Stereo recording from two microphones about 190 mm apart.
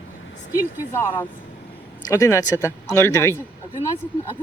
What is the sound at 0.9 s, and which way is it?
Speech, 10° left (ahead or behind).